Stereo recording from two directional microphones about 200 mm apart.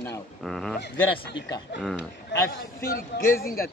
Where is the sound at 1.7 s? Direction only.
65° left (ahead or behind).